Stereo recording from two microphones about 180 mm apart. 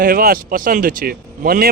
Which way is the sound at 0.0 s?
55° right (ahead or behind).